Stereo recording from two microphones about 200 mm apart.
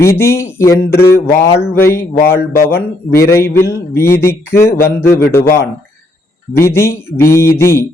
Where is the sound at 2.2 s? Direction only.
55° left (ahead or behind).